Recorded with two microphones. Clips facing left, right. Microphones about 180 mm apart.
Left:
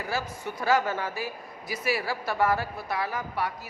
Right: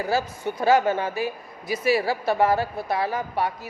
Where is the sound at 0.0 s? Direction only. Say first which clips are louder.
Right 7 dB; 30° right (ahead or behind).